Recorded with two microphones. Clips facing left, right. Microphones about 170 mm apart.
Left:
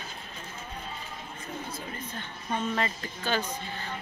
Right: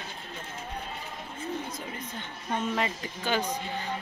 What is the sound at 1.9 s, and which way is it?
Speech, 15° right (ahead or behind).